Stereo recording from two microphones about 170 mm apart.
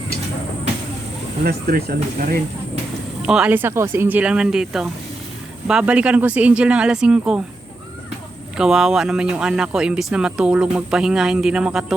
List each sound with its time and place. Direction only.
1.5 s speech: 65° right (ahead or behind)
3.2 s speech: 5° right (ahead or behind)
8.5 s speech: centre (ahead or behind)